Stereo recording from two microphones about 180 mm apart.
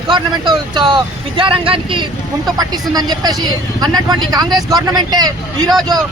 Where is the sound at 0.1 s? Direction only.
25° right (ahead or behind).